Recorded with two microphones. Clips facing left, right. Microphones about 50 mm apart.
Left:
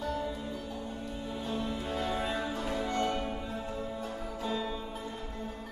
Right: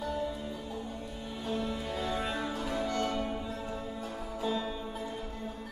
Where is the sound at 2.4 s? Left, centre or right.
Centre.